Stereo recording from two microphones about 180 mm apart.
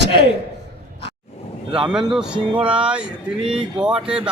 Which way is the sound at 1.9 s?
5° right (ahead or behind).